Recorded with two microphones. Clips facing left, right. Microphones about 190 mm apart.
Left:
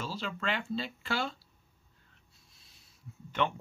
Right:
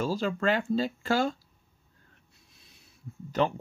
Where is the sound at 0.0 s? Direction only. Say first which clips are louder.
Right 9 dB; 45° right (ahead or behind).